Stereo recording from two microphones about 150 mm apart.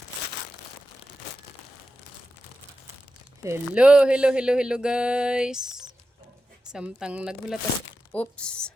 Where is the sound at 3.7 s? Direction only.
5° right (ahead or behind).